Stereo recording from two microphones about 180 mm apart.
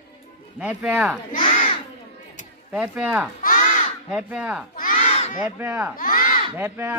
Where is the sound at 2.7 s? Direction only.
5° right (ahead or behind).